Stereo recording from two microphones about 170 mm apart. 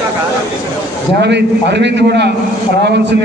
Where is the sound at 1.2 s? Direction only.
90° right.